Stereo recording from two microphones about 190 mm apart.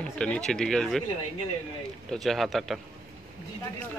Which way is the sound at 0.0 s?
5° left (ahead or behind).